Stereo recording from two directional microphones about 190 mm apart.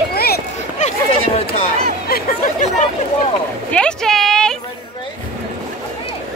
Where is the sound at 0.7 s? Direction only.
35° left (ahead or behind).